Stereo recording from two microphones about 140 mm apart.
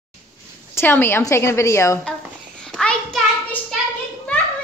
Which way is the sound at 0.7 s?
15° left (ahead or behind).